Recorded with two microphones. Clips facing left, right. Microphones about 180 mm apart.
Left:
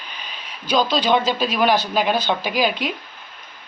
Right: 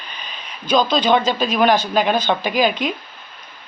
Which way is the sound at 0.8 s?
50° right (ahead or behind).